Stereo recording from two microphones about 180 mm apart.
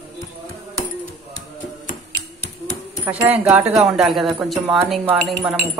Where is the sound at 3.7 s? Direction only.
Centre (ahead or behind).